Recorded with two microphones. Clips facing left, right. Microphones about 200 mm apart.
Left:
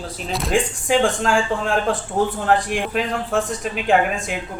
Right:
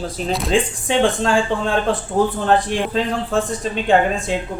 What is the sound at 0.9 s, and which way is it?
A man's voice, 25° right (ahead or behind).